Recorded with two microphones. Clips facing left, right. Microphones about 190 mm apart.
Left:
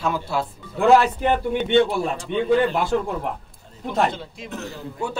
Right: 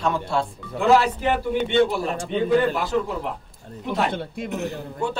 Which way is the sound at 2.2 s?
50° right (ahead or behind).